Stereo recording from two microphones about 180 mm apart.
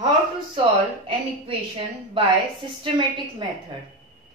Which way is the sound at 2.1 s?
30° right (ahead or behind).